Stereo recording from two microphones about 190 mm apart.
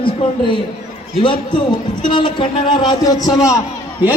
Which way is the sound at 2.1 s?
25° left (ahead or behind).